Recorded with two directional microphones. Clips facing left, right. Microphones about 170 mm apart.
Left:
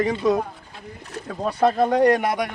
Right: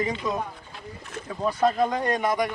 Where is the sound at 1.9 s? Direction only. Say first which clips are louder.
Left 7 dB; 65° left (ahead or behind).